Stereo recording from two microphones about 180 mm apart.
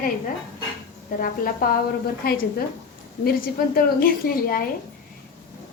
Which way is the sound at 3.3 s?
55° left (ahead or behind).